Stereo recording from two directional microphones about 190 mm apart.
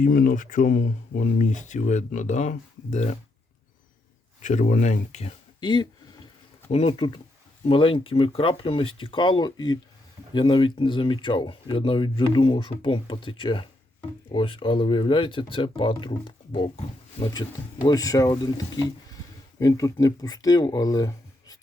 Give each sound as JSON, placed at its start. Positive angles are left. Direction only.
{"t": 0.0, "sound": "speech", "side_deg": 45}
{"t": 4.4, "sound": "speech", "side_deg": 40}
{"t": 5.5, "sound": "speech", "side_deg": 25}